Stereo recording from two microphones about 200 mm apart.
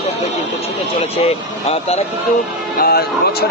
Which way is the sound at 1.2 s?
30° left (ahead or behind).